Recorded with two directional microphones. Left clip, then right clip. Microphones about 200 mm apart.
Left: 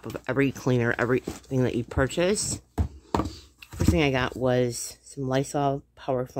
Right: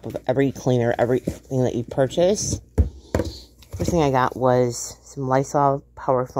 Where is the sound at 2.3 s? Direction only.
40° left (ahead or behind).